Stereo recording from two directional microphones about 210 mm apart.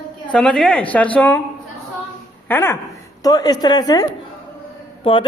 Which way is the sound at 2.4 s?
10° left (ahead or behind).